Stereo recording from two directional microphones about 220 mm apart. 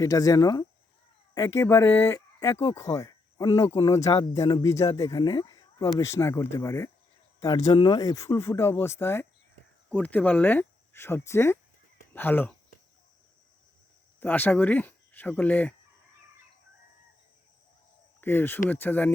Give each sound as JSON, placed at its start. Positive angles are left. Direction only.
{"t": 0.0, "sound": "speech", "side_deg": 15}
{"t": 14.2, "sound": "speech", "side_deg": 10}
{"t": 18.2, "sound": "speech", "side_deg": 10}